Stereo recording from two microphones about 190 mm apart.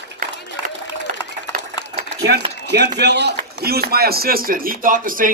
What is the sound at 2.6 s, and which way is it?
Speech, 65° right (ahead or behind).